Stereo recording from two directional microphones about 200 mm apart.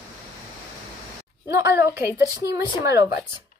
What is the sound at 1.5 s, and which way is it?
Speech, 15° right (ahead or behind).